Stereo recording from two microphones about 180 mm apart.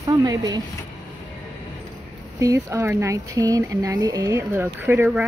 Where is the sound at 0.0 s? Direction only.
20° right (ahead or behind).